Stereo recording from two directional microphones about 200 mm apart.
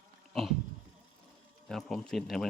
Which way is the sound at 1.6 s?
Centre (ahead or behind).